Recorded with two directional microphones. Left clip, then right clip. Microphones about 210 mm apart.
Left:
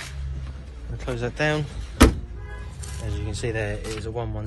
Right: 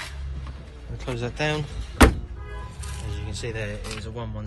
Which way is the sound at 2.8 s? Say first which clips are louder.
Left 1 dB; 15° left (ahead or behind).